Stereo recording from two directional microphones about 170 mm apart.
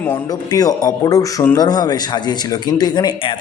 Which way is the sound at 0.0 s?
15° left (ahead or behind).